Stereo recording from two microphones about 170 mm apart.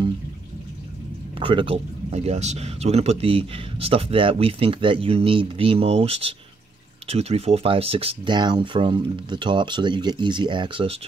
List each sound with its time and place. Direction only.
1.4 s speech: 30° right (ahead or behind)